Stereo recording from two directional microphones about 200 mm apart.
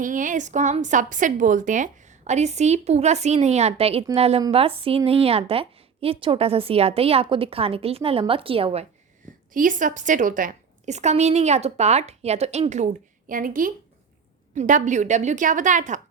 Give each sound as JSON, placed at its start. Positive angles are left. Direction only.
{"t": 0.0, "sound": "a woman's voice", "side_deg": -40}
{"t": 9.5, "sound": "a woman's voice", "side_deg": -40}